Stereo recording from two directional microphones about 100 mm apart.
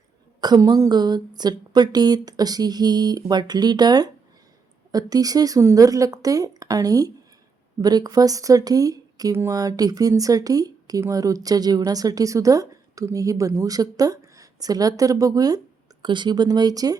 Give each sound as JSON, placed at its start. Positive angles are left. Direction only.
{"t": 0.4, "sound": "speech", "side_deg": -40}
{"t": 9.3, "sound": "speech", "side_deg": -25}
{"t": 9.6, "sound": "a woman's voice", "side_deg": -40}